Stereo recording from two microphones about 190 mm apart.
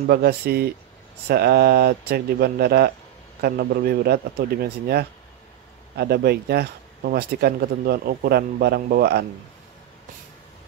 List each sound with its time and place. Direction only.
0.0 s speech: 55° right (ahead or behind)